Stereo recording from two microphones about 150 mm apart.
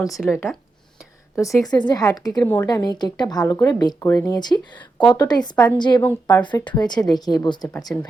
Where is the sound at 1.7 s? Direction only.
30° left (ahead or behind).